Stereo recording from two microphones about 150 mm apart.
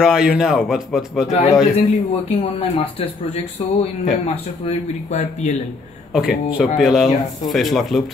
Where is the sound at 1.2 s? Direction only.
45° left (ahead or behind).